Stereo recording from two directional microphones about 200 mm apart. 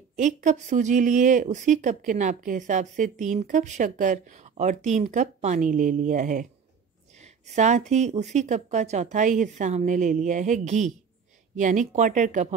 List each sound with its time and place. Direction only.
0.1 s speech: 35° right (ahead or behind)
7.2 s a sound: 35° right (ahead or behind)
7.9 s speech: 35° right (ahead or behind)